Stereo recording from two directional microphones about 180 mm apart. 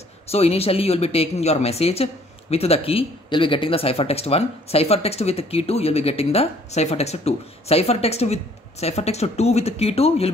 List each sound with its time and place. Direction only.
0.3 s speech: 35° left (ahead or behind)